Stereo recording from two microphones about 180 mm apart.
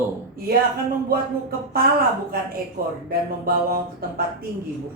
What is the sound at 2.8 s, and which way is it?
Speech, 55° right (ahead or behind).